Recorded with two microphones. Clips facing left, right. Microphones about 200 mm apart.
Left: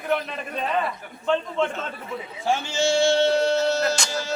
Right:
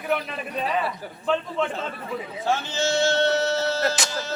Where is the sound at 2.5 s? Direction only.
10° left (ahead or behind).